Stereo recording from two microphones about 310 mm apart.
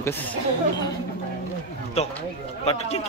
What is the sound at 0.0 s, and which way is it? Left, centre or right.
Speech, centre.